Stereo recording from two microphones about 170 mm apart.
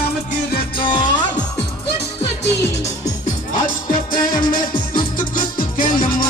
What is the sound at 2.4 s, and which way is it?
Music, 90° left.